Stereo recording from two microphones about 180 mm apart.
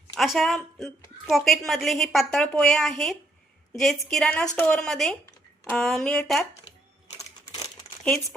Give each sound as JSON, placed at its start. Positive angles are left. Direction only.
{"t": 0.2, "sound": "a woman's voice", "side_deg": 0}
{"t": 7.2, "sound": "crumpling", "side_deg": 20}
{"t": 8.0, "sound": "speech", "side_deg": 5}